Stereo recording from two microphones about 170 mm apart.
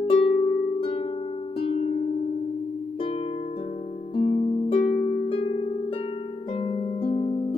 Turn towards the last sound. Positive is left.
turn(degrees=35)  # may be behind; listen again after turning